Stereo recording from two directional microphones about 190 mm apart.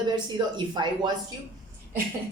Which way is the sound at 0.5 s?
25° right (ahead or behind).